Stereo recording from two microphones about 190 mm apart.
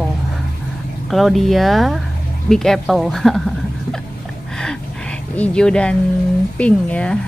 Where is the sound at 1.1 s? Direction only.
Centre (ahead or behind).